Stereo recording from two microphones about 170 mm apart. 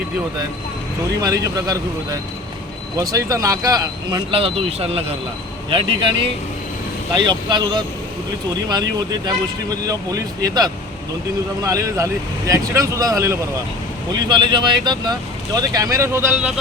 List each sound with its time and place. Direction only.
1.2 s speech: 20° right (ahead or behind)
9.0 s speech: 25° right (ahead or behind)